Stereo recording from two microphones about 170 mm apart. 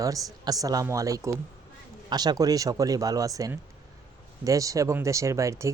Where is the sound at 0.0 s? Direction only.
20° right (ahead or behind).